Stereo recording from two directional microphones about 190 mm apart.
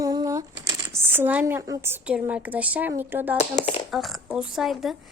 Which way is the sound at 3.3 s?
35° left (ahead or behind).